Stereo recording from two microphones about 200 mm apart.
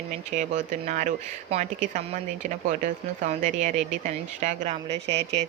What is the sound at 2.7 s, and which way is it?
Speech, 40° right (ahead or behind).